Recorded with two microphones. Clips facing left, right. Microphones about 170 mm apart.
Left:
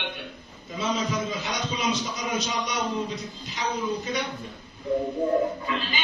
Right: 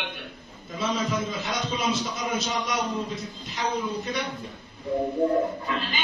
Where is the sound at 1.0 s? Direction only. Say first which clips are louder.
Even; centre (ahead or behind).